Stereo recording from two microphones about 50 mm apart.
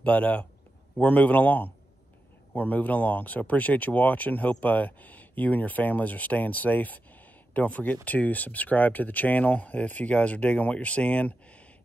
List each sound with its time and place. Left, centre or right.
0.0 s speech: left